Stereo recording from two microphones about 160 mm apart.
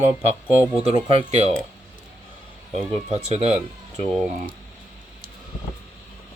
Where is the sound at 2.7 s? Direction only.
40° right (ahead or behind).